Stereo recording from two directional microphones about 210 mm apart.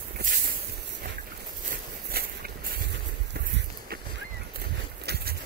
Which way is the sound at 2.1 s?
45° right (ahead or behind).